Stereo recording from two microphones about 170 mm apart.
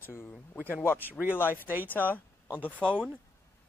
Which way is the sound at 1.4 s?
10° left (ahead or behind).